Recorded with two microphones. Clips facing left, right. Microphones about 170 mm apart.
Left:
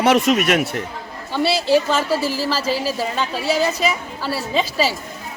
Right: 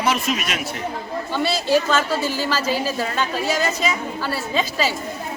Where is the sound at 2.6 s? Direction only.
30° left (ahead or behind).